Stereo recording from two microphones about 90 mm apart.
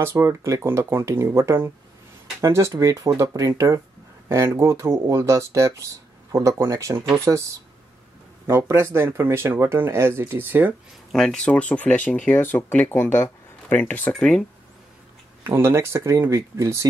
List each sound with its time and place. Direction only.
0.2 s speech: 35° right (ahead or behind)
11.1 s speech: 5° left (ahead or behind)
15.4 s speech: 30° right (ahead or behind)